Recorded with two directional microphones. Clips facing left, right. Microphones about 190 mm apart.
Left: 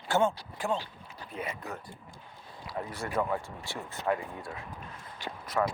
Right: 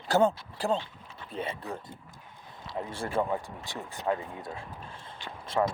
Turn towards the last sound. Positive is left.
turn(degrees=-25)  # may be behind; listen again after turning